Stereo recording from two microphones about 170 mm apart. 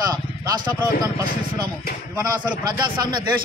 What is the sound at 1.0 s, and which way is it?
A man's voice, 20° right (ahead or behind).